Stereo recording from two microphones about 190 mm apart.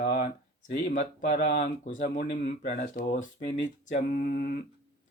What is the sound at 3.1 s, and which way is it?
Speech, 40° left (ahead or behind).